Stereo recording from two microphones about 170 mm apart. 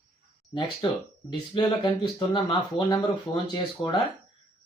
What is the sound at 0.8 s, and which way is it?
Speech, 30° left (ahead or behind).